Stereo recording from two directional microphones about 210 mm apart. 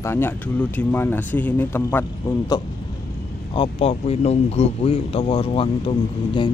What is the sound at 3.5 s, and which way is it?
Speech, 25° left (ahead or behind).